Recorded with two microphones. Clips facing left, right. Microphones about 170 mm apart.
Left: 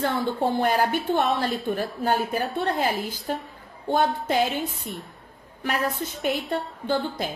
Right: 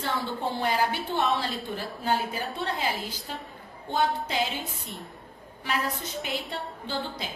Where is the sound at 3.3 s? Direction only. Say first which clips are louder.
Left 8 dB; 50° left (ahead or behind).